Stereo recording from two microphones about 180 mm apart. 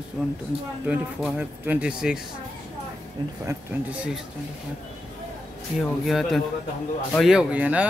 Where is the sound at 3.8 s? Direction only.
5° right (ahead or behind).